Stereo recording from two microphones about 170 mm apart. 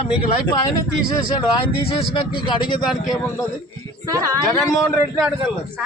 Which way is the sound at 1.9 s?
30° left (ahead or behind).